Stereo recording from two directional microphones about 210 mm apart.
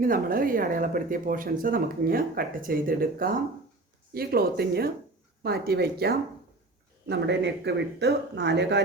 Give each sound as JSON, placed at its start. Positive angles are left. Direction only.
{"t": 0.0, "sound": "speech", "side_deg": -40}